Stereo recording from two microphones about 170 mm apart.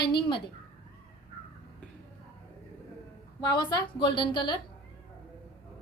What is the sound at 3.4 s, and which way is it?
A woman's voice, 25° left (ahead or behind).